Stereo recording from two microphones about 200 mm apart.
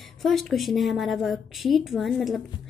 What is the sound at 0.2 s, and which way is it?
A woman's voice, centre (ahead or behind).